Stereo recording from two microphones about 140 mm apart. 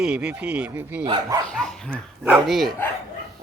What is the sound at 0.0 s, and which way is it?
Speech, 5° right (ahead or behind).